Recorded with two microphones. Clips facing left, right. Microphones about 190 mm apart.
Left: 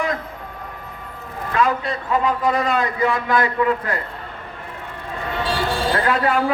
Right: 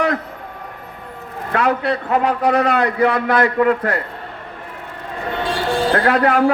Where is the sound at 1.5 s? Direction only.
70° right (ahead or behind).